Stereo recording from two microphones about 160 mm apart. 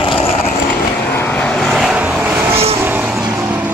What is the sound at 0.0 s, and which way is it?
Vehicle, 35° left (ahead or behind).